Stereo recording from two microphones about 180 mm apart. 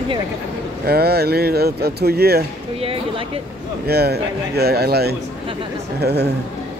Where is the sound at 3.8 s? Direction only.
60° right (ahead or behind).